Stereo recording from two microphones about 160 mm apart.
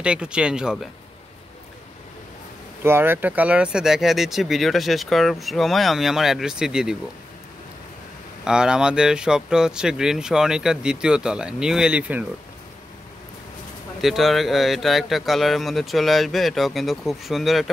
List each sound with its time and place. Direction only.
0.0 s speech: 5° right (ahead or behind)
2.8 s speech: 15° right (ahead or behind)
8.5 s speech: 5° right (ahead or behind)
14.0 s speech: centre (ahead or behind)